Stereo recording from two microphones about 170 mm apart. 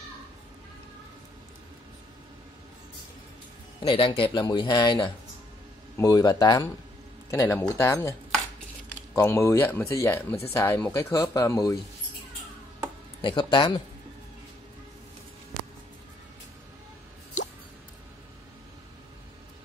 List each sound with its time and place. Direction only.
3.8 s speech: 30° left (ahead or behind)
13.2 s speech: 30° left (ahead or behind)